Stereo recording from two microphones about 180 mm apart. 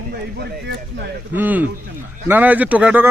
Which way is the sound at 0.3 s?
65° right (ahead or behind).